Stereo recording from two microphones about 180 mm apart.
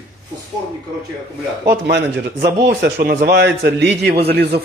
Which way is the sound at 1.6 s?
65° right (ahead or behind).